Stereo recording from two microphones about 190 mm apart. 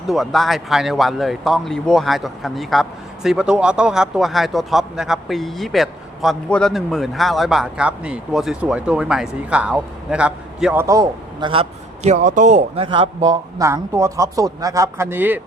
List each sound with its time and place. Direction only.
0.1 s speech: centre (ahead or behind)
10.8 s a man's voice: 20° right (ahead or behind)